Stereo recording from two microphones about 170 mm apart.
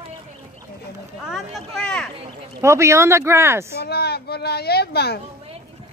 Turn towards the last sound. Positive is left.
turn(degrees=70)  # may be behind; listen again after turning